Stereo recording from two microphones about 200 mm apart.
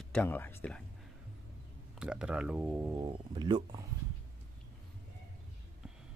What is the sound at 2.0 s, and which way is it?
Speech, 5° right (ahead or behind).